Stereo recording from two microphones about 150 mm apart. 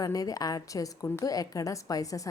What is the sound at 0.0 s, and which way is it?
A woman's voice, 25° left (ahead or behind).